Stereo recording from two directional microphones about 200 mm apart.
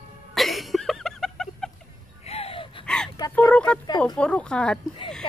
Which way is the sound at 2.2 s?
30° left (ahead or behind).